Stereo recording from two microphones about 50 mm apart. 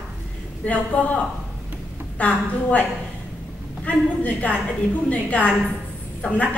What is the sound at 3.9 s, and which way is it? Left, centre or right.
A woman's voice, left.